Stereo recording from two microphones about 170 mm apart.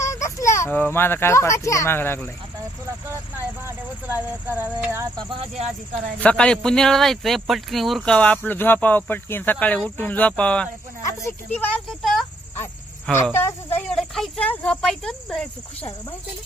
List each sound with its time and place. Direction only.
0.0 s a child's voice: 20° left (ahead or behind)
3.6 s speech: 10° right (ahead or behind)
6.1 s speech: 5° left (ahead or behind)
13.1 s speech: 15° left (ahead or behind)